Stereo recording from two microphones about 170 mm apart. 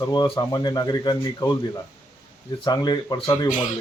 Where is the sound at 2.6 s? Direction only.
25° left (ahead or behind).